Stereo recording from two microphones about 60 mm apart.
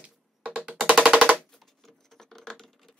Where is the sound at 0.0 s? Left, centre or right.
Right.